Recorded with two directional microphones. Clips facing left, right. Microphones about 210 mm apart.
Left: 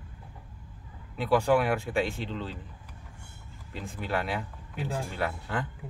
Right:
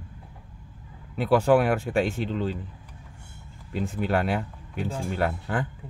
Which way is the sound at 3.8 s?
45° right (ahead or behind).